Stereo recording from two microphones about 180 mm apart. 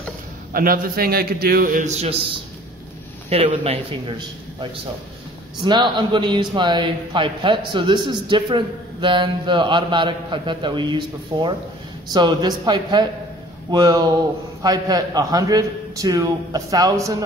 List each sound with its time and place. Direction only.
0.5 s a man's voice: 55° right (ahead or behind); by 2.1 s 40° right (ahead or behind)
3.3 s a man's voice: 35° right (ahead or behind)
5.6 s a man's voice: 25° right (ahead or behind)